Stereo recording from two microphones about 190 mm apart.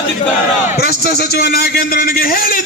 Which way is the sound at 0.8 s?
55° left (ahead or behind).